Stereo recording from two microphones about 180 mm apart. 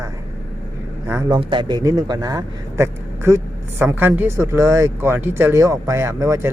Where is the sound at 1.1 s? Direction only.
20° right (ahead or behind).